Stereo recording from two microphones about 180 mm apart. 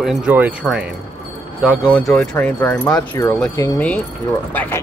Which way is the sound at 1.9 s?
5° left (ahead or behind).